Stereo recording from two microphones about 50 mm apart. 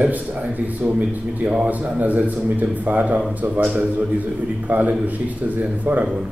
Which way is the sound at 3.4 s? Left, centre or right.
Right.